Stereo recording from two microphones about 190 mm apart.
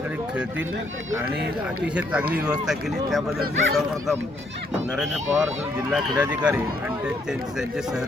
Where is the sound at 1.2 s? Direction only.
55° right (ahead or behind).